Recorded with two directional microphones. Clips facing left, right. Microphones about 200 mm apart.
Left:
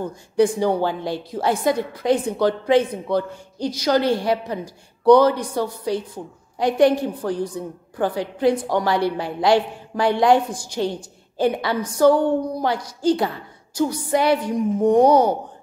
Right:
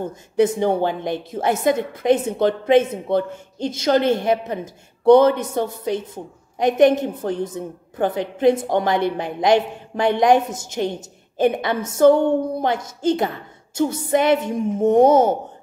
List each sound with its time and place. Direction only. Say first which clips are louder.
0.0 s a woman's voice: even; 20° right (ahead or behind)